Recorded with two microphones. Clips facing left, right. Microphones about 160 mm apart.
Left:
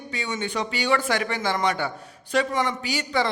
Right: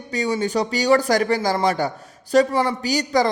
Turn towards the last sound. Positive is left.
turn(degrees=-40)  # may be behind; listen again after turning